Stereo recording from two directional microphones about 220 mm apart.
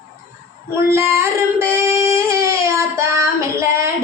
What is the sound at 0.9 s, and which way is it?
Child singing, 10° right (ahead or behind).